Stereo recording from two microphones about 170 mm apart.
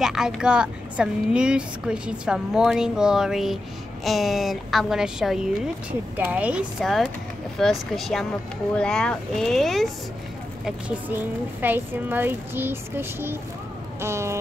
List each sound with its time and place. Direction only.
0.0 s a child's voice: 5° right (ahead or behind)